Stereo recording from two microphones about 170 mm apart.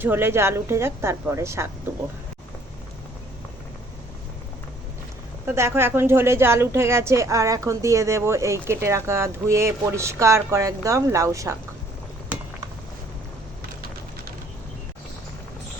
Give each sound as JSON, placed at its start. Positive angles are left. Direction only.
{"t": 0.0, "sound": "a woman's voice", "side_deg": -10}
{"t": 5.5, "sound": "a woman's voice", "side_deg": -15}